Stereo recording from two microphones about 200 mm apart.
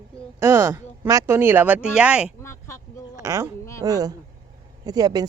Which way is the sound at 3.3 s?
15° right (ahead or behind).